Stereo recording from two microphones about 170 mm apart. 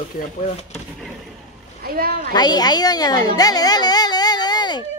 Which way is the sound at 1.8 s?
60° right (ahead or behind).